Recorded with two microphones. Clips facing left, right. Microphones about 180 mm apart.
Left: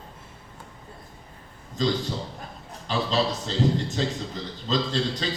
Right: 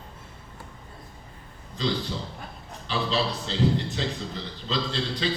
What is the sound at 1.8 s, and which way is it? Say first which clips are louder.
A man's voice: left 3 dB; 45° left (ahead or behind).